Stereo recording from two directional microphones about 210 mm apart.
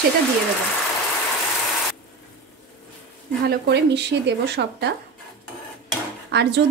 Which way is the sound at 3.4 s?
50° right (ahead or behind).